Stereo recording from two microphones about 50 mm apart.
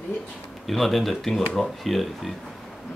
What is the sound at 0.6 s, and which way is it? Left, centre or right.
Speech, centre.